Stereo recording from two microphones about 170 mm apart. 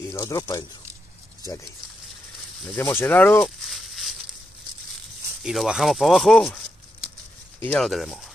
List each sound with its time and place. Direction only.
0.1 s speech: 20° left (ahead or behind)
2.6 s speech: 10° left (ahead or behind)
3.6 s a sound: centre (ahead or behind)
5.4 s speech: centre (ahead or behind)
7.6 s speech: 5° left (ahead or behind)